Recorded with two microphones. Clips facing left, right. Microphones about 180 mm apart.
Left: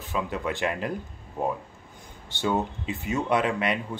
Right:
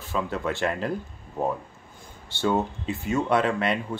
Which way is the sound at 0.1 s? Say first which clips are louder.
Right 1 dB; 15° left (ahead or behind).